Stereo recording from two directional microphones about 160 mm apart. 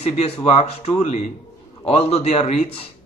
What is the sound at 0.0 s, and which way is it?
Speech, 40° left (ahead or behind).